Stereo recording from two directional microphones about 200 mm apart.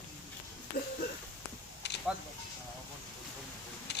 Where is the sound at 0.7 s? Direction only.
50° left (ahead or behind).